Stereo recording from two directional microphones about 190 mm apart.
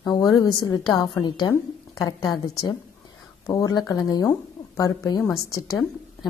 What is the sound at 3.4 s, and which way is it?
A woman's voice, 20° left (ahead or behind).